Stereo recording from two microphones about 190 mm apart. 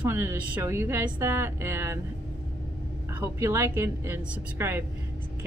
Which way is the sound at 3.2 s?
15° right (ahead or behind).